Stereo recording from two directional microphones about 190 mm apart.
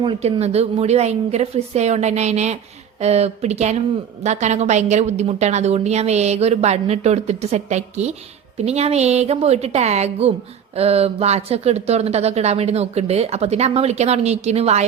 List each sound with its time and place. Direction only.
0.0 s speech: 30° right (ahead or behind)